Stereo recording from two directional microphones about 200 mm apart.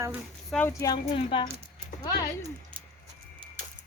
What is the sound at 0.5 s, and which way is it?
A woman's voice, 10° left (ahead or behind).